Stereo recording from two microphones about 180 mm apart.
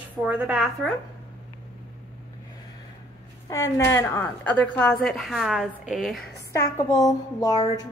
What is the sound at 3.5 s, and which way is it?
A woman's voice, 15° left (ahead or behind).